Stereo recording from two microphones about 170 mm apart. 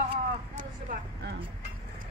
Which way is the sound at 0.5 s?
55° right (ahead or behind).